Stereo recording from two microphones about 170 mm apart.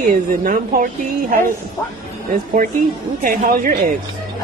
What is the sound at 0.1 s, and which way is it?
Speech, 55° right (ahead or behind).